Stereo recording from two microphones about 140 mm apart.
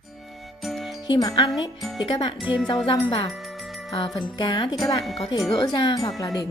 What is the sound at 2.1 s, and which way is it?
Speech, 35° left (ahead or behind).